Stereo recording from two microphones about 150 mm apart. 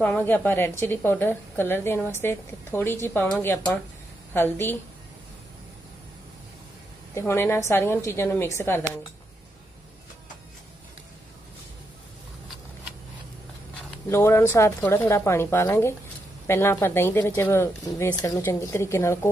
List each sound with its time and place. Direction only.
0.0 s a woman's voice: 10° left (ahead or behind)
7.2 s a woman's voice: 15° left (ahead or behind)
14.0 s a woman's voice: 15° left (ahead or behind)